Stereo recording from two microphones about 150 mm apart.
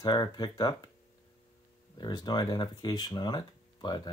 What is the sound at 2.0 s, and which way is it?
Speech, 30° left (ahead or behind).